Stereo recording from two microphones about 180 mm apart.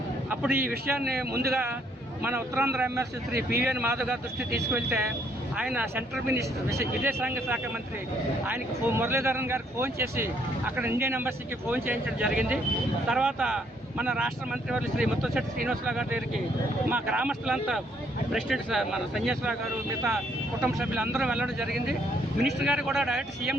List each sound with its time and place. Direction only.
0.3 s a man's voice: 10° right (ahead or behind)
1.0 s a man's voice: 60° right (ahead or behind)
2.2 s speech: 15° right (ahead or behind)